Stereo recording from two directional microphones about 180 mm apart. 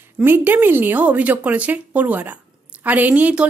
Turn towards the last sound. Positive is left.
turn(degrees=-10)  # may be behind; listen again after turning